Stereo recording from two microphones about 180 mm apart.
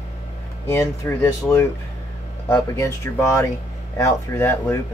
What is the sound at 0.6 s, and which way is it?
Speech, 15° left (ahead or behind).